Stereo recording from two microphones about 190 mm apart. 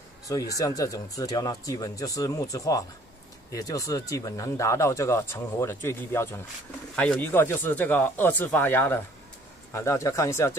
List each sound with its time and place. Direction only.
0.3 s speech: 20° left (ahead or behind)